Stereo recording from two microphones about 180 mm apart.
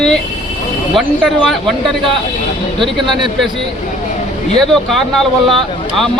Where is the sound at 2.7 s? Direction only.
25° right (ahead or behind).